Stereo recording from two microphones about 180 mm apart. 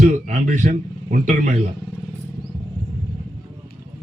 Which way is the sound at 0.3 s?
45° right (ahead or behind).